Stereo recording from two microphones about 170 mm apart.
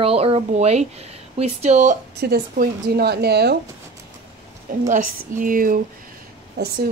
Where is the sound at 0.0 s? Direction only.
35° right (ahead or behind).